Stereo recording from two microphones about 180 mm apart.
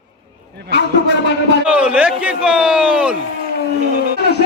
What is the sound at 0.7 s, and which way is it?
Speech, 75° right (ahead or behind).